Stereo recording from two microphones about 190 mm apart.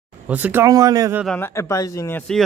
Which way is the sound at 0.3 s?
10° right (ahead or behind).